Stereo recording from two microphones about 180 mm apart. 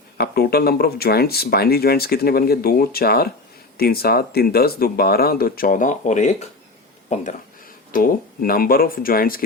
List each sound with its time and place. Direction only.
0.2 s speech: 60° left (ahead or behind); by 7.3 s 40° left (ahead or behind)
7.9 s speech: 50° left (ahead or behind)